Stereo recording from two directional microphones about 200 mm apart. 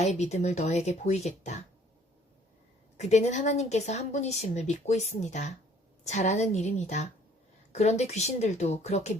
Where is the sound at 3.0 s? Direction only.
35° left (ahead or behind).